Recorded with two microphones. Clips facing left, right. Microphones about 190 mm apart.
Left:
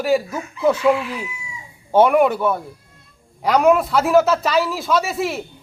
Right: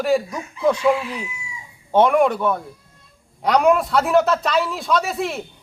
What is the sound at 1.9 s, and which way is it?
Speech, 5° left (ahead or behind).